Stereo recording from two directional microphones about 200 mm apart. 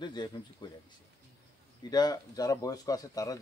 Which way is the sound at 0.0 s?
20° left (ahead or behind).